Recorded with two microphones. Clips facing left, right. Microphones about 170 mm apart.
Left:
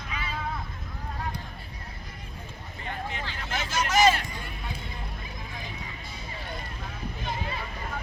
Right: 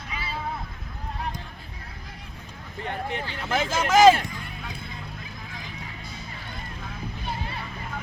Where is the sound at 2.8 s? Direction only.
60° right (ahead or behind).